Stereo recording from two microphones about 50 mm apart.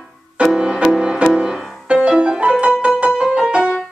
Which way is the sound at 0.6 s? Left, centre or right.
Right.